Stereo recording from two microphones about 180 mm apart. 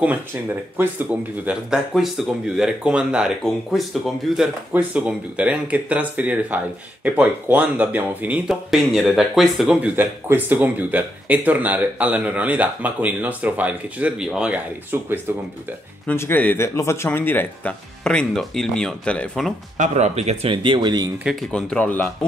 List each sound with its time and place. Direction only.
0.0 s speech: 10° right (ahead or behind)
16.1 s speech: 10° left (ahead or behind)
19.8 s speech: 40° right (ahead or behind)
20.5 s speech: 25° right (ahead or behind)
21.2 s speech: centre (ahead or behind)